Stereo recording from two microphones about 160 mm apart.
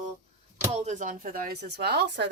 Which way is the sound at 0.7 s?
45° right (ahead or behind).